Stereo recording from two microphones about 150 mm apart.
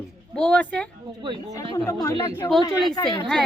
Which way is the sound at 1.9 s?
20° left (ahead or behind).